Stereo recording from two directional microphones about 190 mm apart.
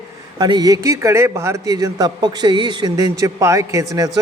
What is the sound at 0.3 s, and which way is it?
A man's voice, 20° right (ahead or behind).